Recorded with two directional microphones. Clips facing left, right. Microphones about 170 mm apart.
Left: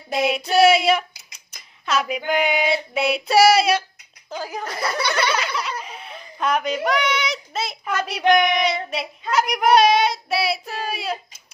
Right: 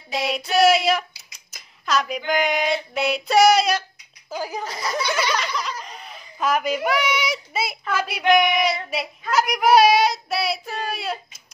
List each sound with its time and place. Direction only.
0.3 s a sound: centre (ahead or behind)
4.3 s speech: 10° right (ahead or behind)
4.6 s speech: 65° left (ahead or behind)
5.3 s giggle: 5° left (ahead or behind)
7.9 s speech: 5° right (ahead or behind)
8.3 s a sound: 5° right (ahead or behind)